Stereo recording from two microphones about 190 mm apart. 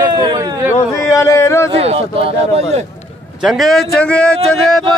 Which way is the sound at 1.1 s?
15° left (ahead or behind).